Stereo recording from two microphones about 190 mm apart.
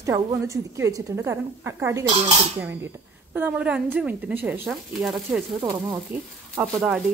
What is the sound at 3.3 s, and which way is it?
Speech, 5° right (ahead or behind).